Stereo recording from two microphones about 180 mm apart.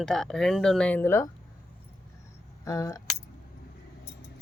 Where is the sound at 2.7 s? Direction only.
15° left (ahead or behind).